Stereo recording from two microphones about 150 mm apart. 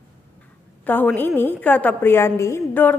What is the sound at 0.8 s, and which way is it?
A woman's voice, 10° left (ahead or behind).